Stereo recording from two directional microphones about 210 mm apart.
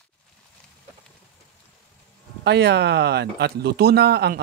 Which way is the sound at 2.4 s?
50° right (ahead or behind).